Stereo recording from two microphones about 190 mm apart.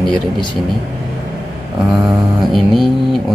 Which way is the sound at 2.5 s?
Centre (ahead or behind).